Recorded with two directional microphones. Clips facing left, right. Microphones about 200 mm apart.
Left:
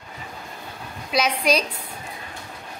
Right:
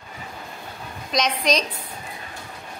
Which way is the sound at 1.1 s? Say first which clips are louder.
Left 1 dB; 5° left (ahead or behind).